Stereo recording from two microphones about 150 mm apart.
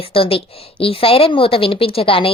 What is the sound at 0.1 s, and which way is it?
A woman's voice, 40° left (ahead or behind).